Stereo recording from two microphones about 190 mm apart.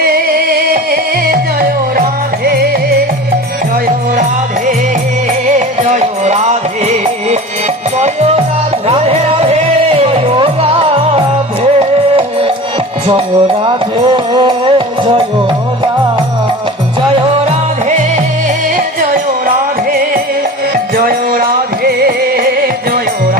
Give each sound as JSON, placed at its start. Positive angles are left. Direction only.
{"t": 0.0, "sound": "music", "side_deg": -50}
{"t": 2.4, "sound": "music", "side_deg": -55}
{"t": 5.5, "sound": "music", "side_deg": -40}
{"t": 13.7, "sound": "music", "side_deg": -25}
{"t": 20.9, "sound": "music", "side_deg": -50}